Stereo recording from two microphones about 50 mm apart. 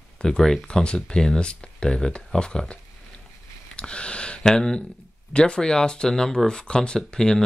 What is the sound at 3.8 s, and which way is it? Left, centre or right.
Speech, left.